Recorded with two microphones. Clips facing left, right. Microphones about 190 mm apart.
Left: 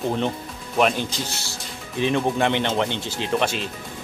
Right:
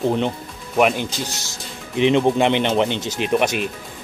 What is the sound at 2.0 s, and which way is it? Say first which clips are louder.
Speech: right 5 dB; 20° right (ahead or behind).